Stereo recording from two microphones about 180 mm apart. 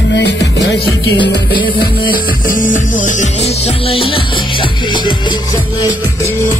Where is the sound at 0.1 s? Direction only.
75° left (ahead or behind).